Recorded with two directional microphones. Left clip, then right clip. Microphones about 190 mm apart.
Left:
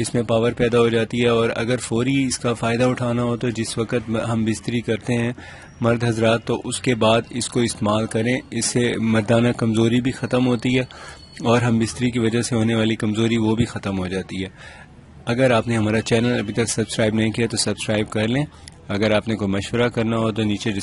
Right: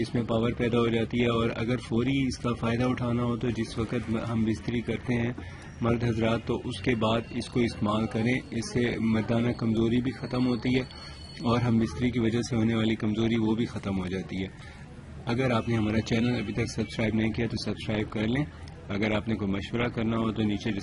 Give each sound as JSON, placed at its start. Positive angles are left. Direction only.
{"t": 0.0, "sound": "speech", "side_deg": 45}